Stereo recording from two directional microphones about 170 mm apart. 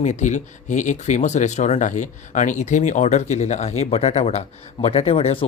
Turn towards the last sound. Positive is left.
turn(degrees=35)  # may be behind; listen again after turning